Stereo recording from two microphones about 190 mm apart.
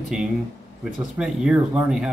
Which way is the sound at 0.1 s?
5° right (ahead or behind).